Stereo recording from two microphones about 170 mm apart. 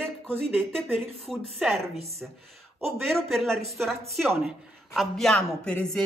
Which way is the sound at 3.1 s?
Centre (ahead or behind).